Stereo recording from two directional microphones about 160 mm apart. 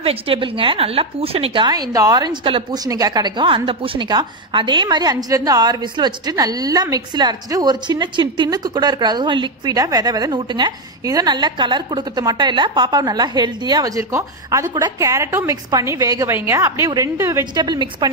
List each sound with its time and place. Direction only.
0.0 s a woman's voice: 35° right (ahead or behind)